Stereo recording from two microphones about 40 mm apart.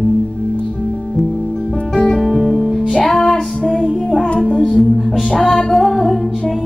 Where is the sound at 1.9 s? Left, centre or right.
Centre.